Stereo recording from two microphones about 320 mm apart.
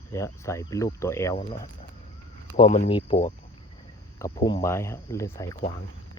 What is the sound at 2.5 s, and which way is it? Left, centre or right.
Speech, left.